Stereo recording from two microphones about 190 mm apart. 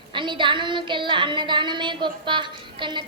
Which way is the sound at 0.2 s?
25° right (ahead or behind).